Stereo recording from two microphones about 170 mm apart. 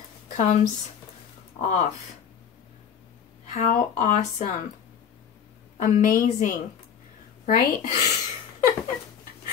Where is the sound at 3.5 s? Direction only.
45° left (ahead or behind).